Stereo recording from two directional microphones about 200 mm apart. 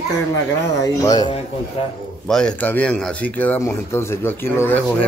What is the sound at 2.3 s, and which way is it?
Speech, 5° left (ahead or behind).